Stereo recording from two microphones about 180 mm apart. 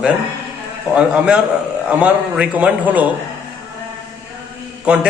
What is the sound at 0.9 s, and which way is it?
A man's voice, 5° right (ahead or behind).